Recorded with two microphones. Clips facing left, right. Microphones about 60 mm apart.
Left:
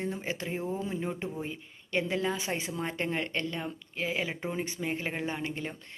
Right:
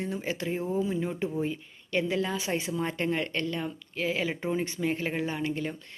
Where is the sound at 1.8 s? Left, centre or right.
Left.